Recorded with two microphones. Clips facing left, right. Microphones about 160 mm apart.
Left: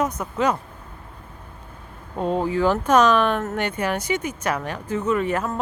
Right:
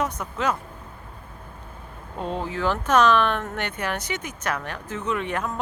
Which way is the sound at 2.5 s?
10° left (ahead or behind).